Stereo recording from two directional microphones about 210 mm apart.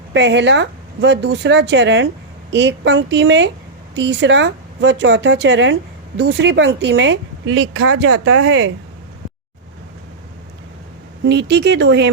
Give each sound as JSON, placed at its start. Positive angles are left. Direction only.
{"t": 0.1, "sound": "speech", "side_deg": -55}
{"t": 8.0, "sound": "speech", "side_deg": -70}
{"t": 11.2, "sound": "speech", "side_deg": -55}